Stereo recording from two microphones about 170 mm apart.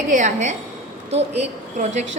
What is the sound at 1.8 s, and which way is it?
Speech, 40° right (ahead or behind).